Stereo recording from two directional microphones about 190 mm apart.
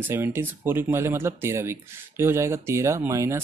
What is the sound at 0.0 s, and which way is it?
Speech, 10° right (ahead or behind).